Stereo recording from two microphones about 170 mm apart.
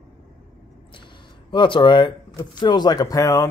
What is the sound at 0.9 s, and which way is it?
Speech, 30° left (ahead or behind).